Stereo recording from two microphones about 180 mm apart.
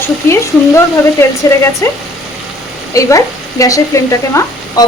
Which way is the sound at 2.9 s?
20° left (ahead or behind).